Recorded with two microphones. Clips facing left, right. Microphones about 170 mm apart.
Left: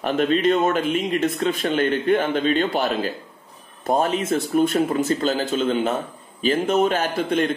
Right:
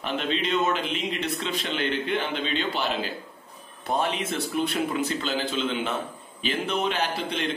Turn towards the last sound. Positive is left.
turn(degrees=50)  # may be behind; listen again after turning